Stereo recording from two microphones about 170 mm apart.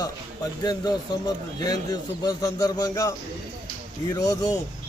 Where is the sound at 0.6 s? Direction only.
25° left (ahead or behind).